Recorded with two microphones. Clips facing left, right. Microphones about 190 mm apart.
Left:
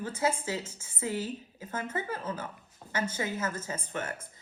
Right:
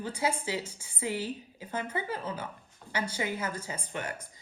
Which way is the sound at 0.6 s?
30° right (ahead or behind).